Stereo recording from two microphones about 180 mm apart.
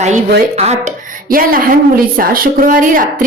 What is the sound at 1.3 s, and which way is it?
A woman's voice, 50° right (ahead or behind).